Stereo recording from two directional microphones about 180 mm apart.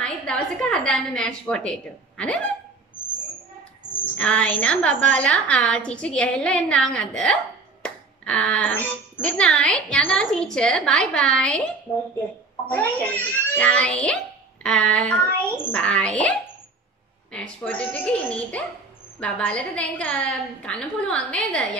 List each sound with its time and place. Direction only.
0.0 s a woman's voice: 5° left (ahead or behind)
4.2 s a woman's voice: 5° left (ahead or behind)
12.6 s a woman's voice: 10° left (ahead or behind)